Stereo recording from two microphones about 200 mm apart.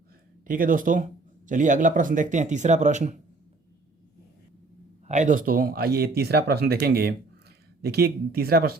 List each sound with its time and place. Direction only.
0.4 s speech: 45° right (ahead or behind)
5.0 s speech: 35° right (ahead or behind)